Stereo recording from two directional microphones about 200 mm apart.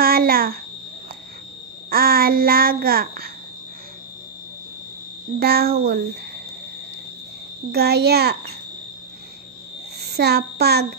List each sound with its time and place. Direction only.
0.0 s a sound: 50° right (ahead or behind)
1.9 s a child's voice: 50° right (ahead or behind)
5.4 s a child's voice: 50° right (ahead or behind)
7.7 s a child's voice: 55° right (ahead or behind)
10.0 s child singing: 55° right (ahead or behind)